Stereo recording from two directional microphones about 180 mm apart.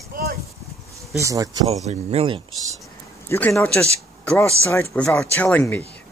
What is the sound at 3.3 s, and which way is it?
Speech, 10° left (ahead or behind).